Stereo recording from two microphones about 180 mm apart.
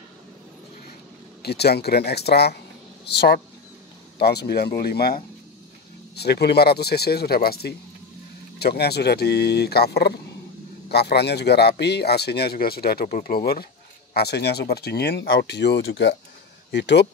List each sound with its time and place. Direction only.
1.4 s speech: 65° left (ahead or behind); by 16.2 s 85° left
16.7 s speech: 75° left (ahead or behind)